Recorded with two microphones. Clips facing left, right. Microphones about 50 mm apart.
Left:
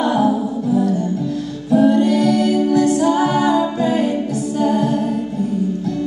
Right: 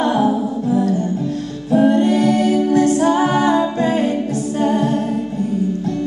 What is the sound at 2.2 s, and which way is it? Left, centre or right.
Music, right.